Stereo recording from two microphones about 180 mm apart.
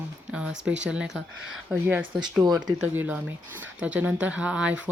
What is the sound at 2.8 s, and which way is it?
Speech, 10° right (ahead or behind).